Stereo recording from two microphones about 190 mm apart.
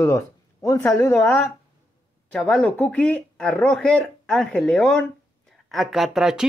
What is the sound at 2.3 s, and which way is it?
Speech, centre (ahead or behind).